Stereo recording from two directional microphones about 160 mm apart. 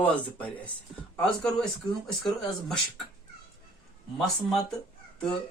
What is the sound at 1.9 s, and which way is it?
Speech, 25° left (ahead or behind).